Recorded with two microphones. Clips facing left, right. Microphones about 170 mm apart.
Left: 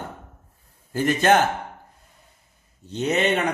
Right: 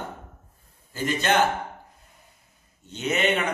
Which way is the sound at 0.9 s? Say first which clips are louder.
Left 6 dB; 50° left (ahead or behind).